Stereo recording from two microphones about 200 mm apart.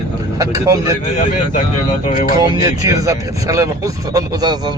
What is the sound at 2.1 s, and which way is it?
Speech, 45° left (ahead or behind).